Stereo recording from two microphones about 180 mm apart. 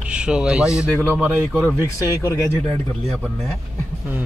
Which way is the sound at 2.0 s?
20° left (ahead or behind).